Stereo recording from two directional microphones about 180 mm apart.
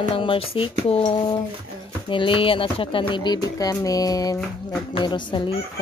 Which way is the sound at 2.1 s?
30° left (ahead or behind).